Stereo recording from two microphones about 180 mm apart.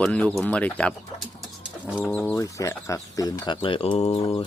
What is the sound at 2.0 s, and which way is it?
Speech, 5° left (ahead or behind).